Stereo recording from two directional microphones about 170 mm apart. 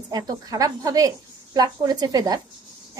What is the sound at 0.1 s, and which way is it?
A woman's voice, 20° right (ahead or behind).